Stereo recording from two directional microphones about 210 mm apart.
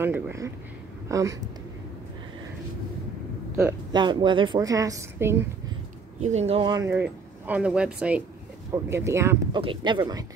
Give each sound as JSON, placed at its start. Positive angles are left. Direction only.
{"t": 0.0, "sound": "a woman's voice", "side_deg": -10}
{"t": 3.5, "sound": "a woman's voice", "side_deg": -15}
{"t": 6.2, "sound": "a woman's voice", "side_deg": -30}